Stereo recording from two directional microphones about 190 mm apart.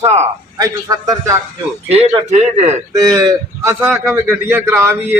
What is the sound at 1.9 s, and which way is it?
Speech, 35° right (ahead or behind).